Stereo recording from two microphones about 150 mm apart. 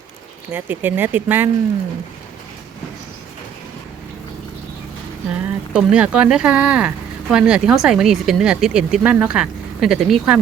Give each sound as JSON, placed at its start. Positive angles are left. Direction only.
{"t": 0.5, "sound": "speech", "side_deg": -10}
{"t": 5.3, "sound": "speech", "side_deg": -10}